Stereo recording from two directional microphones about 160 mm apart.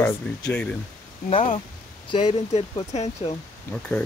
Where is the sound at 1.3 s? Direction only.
35° left (ahead or behind).